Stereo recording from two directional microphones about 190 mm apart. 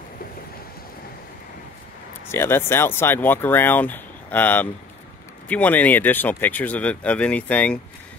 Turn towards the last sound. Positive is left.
turn(degrees=5)  # may be behind; listen again after turning